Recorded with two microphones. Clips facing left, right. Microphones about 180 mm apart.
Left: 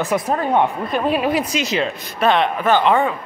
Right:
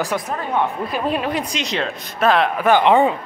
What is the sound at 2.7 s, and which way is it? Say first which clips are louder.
Speech: right 2 dB; 20° right (ahead or behind).